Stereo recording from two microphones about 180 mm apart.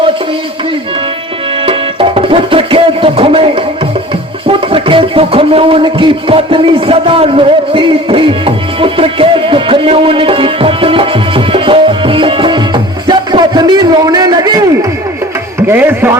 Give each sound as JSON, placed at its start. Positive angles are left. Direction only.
{"t": 1.6, "sound": "music", "side_deg": -30}